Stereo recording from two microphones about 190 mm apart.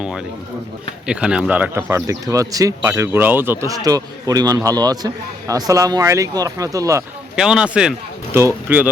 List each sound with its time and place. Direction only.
0.0 s a man's voice: 5° right (ahead or behind)
7.3 s speech: 5° right (ahead or behind)